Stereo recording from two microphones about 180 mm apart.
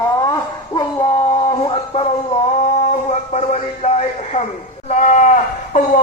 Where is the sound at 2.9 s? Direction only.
35° left (ahead or behind).